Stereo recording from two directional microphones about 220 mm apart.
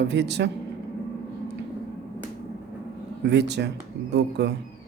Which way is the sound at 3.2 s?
50° right (ahead or behind).